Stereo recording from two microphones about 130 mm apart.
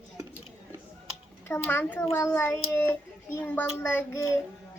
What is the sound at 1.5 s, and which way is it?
Speech, 15° left (ahead or behind).